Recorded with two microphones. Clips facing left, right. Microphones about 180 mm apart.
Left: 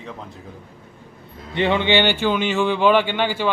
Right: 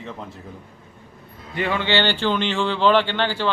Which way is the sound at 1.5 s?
25° left (ahead or behind).